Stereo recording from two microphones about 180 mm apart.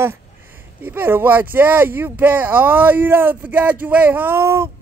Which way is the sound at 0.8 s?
10° right (ahead or behind).